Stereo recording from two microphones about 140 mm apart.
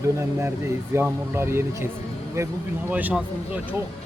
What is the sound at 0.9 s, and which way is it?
A man's voice, 15° right (ahead or behind).